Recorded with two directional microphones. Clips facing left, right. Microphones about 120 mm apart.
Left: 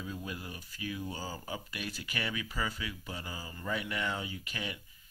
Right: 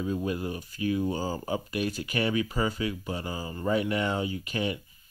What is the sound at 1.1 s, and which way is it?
Speech, 50° right (ahead or behind).